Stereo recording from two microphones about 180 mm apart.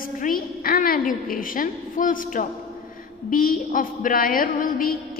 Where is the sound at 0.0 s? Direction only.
50° left (ahead or behind).